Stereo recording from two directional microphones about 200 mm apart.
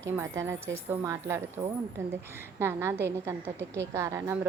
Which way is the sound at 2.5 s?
10° right (ahead or behind).